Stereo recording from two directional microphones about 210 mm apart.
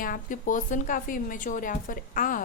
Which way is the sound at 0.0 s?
40° left (ahead or behind).